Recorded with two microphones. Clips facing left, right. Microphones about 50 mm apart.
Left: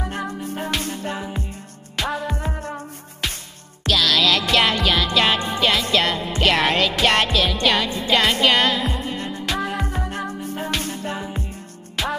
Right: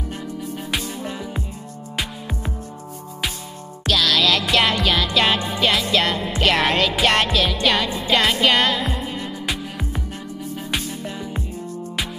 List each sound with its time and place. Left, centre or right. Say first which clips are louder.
0.2 s music: left 2 dB; left
3.8 s music: even; centre
10.1 s music: left 3 dB; left